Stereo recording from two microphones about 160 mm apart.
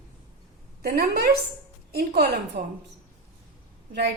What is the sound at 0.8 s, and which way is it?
Speech, 70° right (ahead or behind).